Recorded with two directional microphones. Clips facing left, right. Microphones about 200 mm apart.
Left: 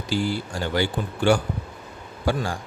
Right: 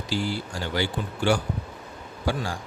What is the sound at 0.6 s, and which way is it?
Speech, 50° left (ahead or behind).